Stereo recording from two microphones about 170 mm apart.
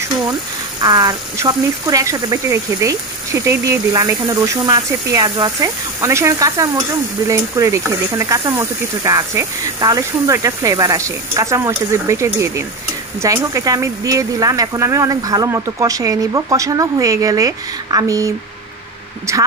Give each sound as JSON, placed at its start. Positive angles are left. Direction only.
{"t": 0.7, "sound": "speech", "side_deg": -20}